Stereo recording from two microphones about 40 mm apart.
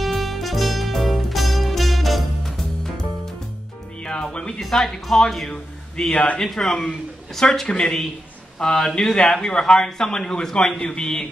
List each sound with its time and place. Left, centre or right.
0.0 s music: centre
2.5 s music: centre
4.6 s speech: centre
5.5 s a man's voice: centre
6.1 s a man's voice: left
6.4 s a man's voice: centre